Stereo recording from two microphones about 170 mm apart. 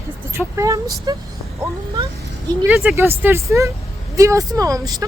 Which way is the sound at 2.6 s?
5° right (ahead or behind).